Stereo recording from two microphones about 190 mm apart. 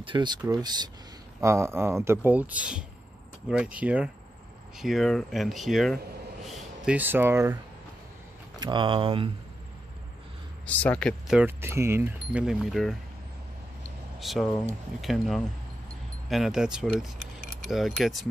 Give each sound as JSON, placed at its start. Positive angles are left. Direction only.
{"t": 0.0, "sound": "speech", "side_deg": -25}
{"t": 8.5, "sound": "speech", "side_deg": -25}
{"t": 10.6, "sound": "speech", "side_deg": 5}
{"t": 14.2, "sound": "speech", "side_deg": 0}